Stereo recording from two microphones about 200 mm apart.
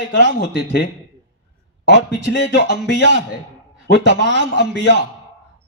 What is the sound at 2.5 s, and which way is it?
Speech, 55° left (ahead or behind).